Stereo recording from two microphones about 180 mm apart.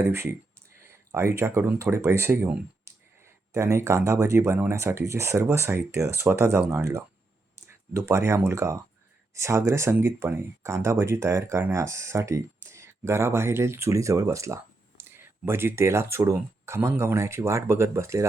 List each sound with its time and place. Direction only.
0.1 s speech: 15° right (ahead or behind)